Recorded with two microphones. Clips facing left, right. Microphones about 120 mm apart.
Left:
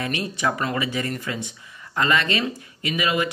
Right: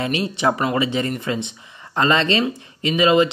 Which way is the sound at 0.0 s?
20° right (ahead or behind).